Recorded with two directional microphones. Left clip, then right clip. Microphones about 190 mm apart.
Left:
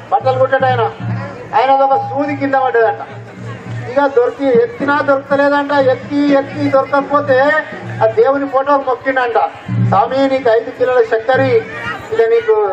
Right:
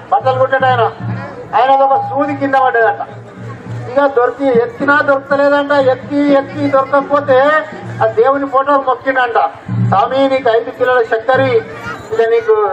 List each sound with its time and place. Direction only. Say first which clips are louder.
0.1 s a man's voice: right 1 dB; 25° left (ahead or behind)
3.9 s a man's voice: right 1 dB; 25° left (ahead or behind)